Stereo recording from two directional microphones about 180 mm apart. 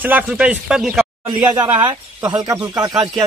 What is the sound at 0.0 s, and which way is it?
Speech, 10° right (ahead or behind).